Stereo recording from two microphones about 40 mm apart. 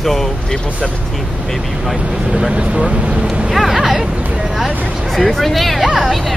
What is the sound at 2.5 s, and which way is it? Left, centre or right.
Speech, right.